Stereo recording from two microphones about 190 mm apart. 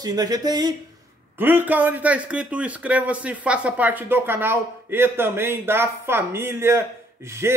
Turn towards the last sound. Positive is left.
turn(degrees=-15)  # may be behind; listen again after turning